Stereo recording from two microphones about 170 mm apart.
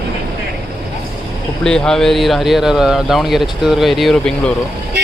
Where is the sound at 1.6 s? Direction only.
5° left (ahead or behind).